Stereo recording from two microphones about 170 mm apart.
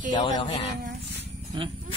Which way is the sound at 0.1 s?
25° left (ahead or behind).